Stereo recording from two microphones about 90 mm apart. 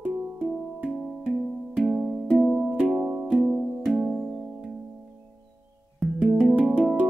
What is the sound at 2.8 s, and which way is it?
Music, 15° right (ahead or behind).